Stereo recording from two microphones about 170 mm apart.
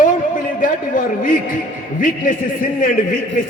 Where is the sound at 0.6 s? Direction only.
55° left (ahead or behind).